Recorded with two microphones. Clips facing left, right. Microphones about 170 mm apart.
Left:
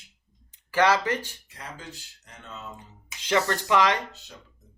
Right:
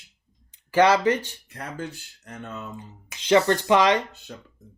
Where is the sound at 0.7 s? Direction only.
20° right (ahead or behind).